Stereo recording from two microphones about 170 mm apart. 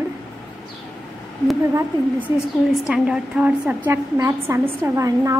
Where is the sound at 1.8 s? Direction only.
10° right (ahead or behind).